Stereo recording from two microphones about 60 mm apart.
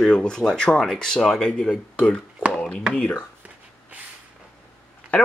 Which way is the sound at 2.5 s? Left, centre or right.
Centre.